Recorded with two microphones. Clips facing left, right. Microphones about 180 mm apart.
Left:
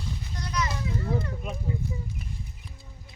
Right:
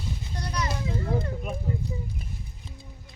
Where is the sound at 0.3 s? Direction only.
30° right (ahead or behind).